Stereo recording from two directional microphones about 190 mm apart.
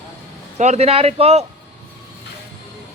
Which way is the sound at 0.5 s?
35° right (ahead or behind).